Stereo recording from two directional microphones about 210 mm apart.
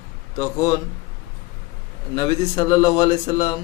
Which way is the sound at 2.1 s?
20° left (ahead or behind).